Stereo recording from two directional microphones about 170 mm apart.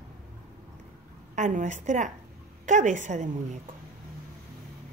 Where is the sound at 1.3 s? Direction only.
45° right (ahead or behind).